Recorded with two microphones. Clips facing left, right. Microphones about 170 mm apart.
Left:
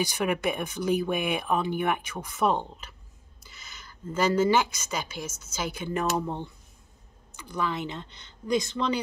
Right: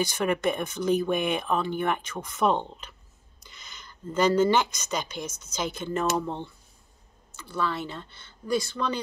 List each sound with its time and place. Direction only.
0.0 s speech: 10° left (ahead or behind)